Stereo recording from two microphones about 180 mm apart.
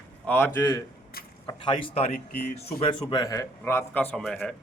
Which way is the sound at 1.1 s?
55° left (ahead or behind).